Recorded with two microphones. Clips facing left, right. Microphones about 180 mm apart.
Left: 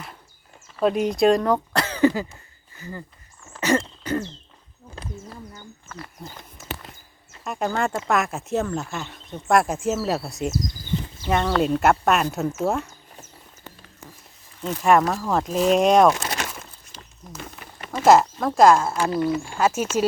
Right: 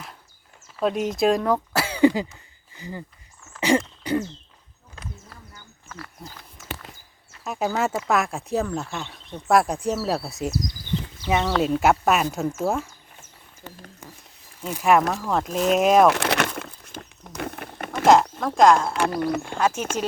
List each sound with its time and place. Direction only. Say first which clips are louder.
0.8 s speech: left 3 dB; centre (ahead or behind); by 3.0 s 15° right (ahead or behind)
3.6 s throat clearing: right 1 dB; 15° right (ahead or behind)
4.9 s a sound: left 5 dB; 30° left (ahead or behind)
6.2 s speech: left 2 dB; centre (ahead or behind)
7.4 s speech: even; 5° right (ahead or behind)
14.6 s speech: left 1 dB; 5° right (ahead or behind)
16.1 s a sound: right 6 dB; 65° right (ahead or behind)
18.0 s speech: left 1 dB; 5° left (ahead or behind)
18.9 s speech: left 1 dB; 55° right (ahead or behind)
19.5 s speech: left 2 dB; 5° left (ahead or behind)